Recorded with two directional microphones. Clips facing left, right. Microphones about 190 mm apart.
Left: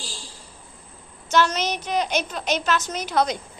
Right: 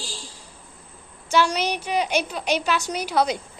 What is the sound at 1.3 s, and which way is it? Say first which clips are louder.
A woman's voice: even; 10° right (ahead or behind).